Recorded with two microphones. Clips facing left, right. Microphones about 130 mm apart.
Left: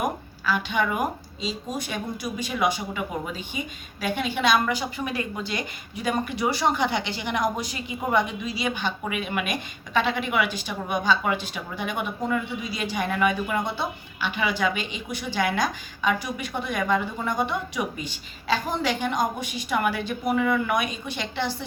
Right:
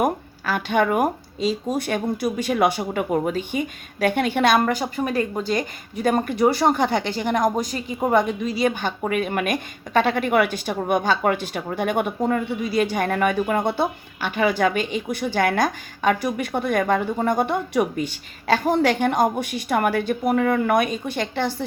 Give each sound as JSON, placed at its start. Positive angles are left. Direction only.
{"t": 0.0, "sound": "a woman's voice", "side_deg": -55}